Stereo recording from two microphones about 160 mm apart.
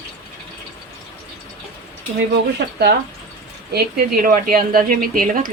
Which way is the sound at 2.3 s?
90° right.